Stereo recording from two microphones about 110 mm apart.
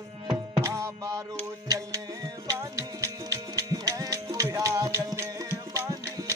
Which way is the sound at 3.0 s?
30° right (ahead or behind).